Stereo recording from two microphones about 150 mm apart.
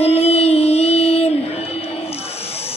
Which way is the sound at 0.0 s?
45° left (ahead or behind).